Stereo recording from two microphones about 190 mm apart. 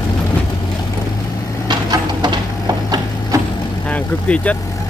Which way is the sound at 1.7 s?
20° right (ahead or behind).